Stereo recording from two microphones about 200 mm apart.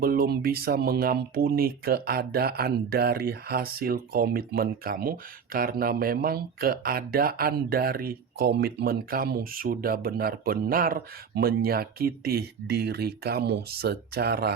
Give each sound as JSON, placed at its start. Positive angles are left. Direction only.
{"t": 0.0, "sound": "speech", "side_deg": -50}